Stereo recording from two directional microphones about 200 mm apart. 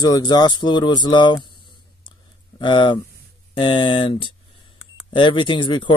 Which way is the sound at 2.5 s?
25° left (ahead or behind).